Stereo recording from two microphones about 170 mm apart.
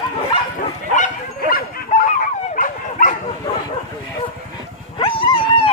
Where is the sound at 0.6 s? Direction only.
50° left (ahead or behind).